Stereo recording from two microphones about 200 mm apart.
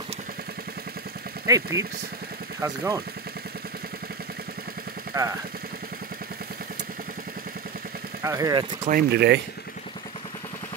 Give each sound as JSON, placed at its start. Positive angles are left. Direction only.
{"t": 1.5, "sound": "speech", "side_deg": -15}
{"t": 5.1, "sound": "speech", "side_deg": -15}
{"t": 8.2, "sound": "speech", "side_deg": -15}
{"t": 8.8, "sound": "speech", "side_deg": -50}